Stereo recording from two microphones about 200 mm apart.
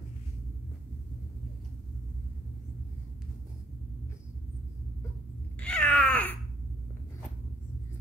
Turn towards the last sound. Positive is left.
turn(degrees=5)  # may be behind; listen again after turning